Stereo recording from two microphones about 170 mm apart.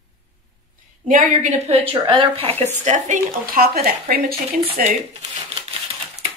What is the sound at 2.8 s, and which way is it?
Speech, 45° right (ahead or behind).